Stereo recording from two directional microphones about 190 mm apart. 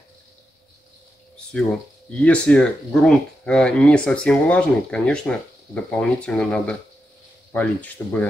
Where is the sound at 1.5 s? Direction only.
5° left (ahead or behind).